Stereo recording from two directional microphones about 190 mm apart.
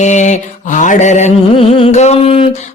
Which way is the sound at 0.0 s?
40° left (ahead or behind).